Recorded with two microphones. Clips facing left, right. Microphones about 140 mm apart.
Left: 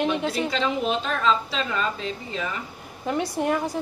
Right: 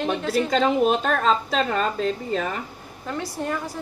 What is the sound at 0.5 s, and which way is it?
A woman's voice, 45° right (ahead or behind).